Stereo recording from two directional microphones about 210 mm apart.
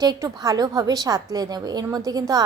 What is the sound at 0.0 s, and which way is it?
A woman's voice, 20° right (ahead or behind).